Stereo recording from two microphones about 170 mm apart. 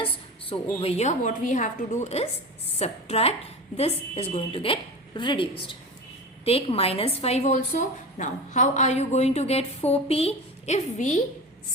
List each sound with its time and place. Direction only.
0.5 s a woman's voice: 35° left (ahead or behind)